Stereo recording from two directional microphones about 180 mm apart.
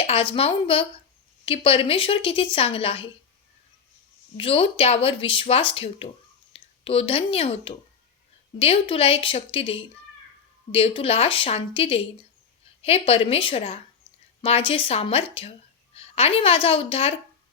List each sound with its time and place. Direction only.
0.1 s speech: 30° left (ahead or behind)
4.4 s speech: 30° left (ahead or behind)